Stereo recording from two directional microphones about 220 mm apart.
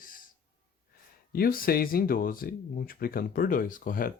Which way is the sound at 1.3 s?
40° left (ahead or behind).